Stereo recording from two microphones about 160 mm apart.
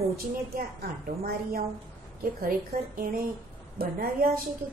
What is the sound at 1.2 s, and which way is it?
Speech, 70° right (ahead or behind).